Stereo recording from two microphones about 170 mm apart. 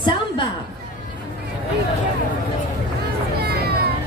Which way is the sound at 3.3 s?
65° right (ahead or behind).